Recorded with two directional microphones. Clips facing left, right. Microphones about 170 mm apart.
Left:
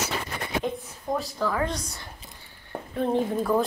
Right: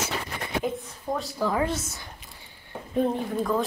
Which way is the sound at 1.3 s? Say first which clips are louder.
Right 3 dB; 15° right (ahead or behind).